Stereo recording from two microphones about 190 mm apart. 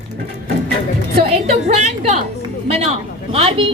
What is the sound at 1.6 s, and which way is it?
A woman's voice, 35° right (ahead or behind).